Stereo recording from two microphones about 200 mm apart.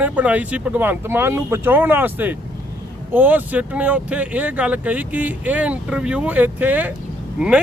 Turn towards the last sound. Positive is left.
turn(degrees=-5)  # may be behind; listen again after turning